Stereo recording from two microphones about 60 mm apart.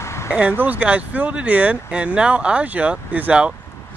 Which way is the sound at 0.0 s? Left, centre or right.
Left.